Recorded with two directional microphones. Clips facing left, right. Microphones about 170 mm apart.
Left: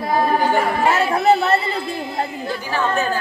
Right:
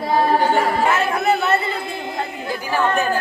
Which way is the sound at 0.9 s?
35° left (ahead or behind).